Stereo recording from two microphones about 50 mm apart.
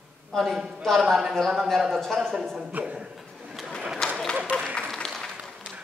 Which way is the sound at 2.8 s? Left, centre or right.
Right.